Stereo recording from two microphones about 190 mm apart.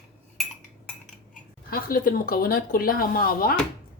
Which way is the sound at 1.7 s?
50° left (ahead or behind).